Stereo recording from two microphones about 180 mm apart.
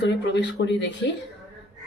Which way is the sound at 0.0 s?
75° left (ahead or behind).